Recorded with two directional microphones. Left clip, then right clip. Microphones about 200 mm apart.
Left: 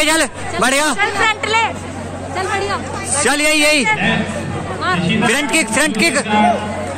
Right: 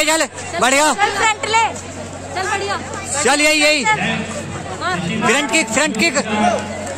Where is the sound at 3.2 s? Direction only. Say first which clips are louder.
Even; 5° right (ahead or behind).